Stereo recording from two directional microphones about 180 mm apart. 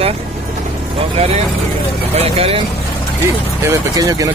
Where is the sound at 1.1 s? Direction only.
35° right (ahead or behind).